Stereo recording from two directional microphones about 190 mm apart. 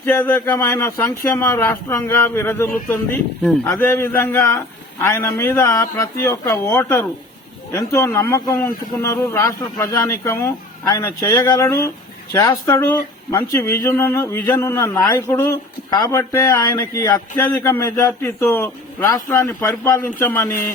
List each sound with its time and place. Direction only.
0.0 s speech: 10° left (ahead or behind)